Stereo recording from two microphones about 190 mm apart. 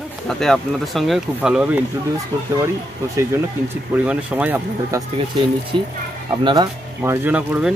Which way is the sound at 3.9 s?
5° right (ahead or behind).